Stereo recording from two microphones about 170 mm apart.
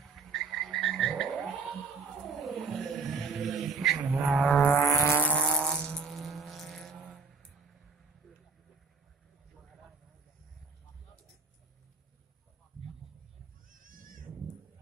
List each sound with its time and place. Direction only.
0.0 s frog: centre (ahead or behind)
2.2 s a sound: centre (ahead or behind)
4.5 s vehicle: 10° left (ahead or behind)
13.7 s goat: 55° right (ahead or behind)